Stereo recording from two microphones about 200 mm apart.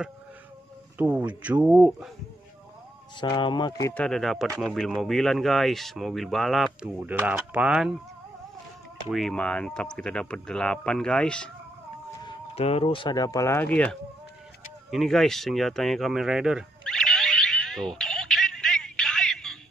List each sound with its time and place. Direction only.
0.9 s speech: 5° right (ahead or behind)
3.2 s speech: 25° left (ahead or behind)
4.0 s speech: centre (ahead or behind)
9.1 s speech: 5° left (ahead or behind)
12.2 s speech: 25° left (ahead or behind); by 13.9 s 5° left (ahead or behind)
14.9 s a sound: centre (ahead or behind)